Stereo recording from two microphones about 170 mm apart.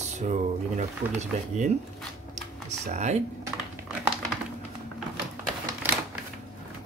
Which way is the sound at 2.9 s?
45° right (ahead or behind).